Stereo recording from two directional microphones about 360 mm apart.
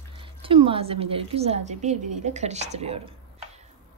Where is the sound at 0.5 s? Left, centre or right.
Centre.